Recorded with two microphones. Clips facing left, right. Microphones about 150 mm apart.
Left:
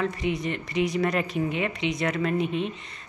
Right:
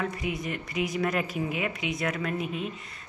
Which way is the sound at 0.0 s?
Centre (ahead or behind).